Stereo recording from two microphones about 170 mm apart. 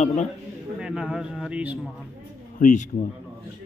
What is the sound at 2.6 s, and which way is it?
Speech, 45° left (ahead or behind).